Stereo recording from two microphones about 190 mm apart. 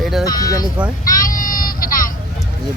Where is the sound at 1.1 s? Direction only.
45° left (ahead or behind).